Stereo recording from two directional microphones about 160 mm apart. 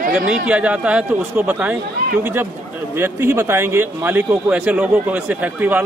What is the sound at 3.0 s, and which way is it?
Speech, 15° right (ahead or behind).